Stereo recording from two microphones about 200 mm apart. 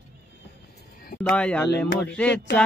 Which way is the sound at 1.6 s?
55° left (ahead or behind).